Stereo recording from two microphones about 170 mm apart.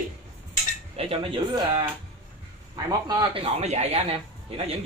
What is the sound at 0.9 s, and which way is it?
Speech, 35° right (ahead or behind).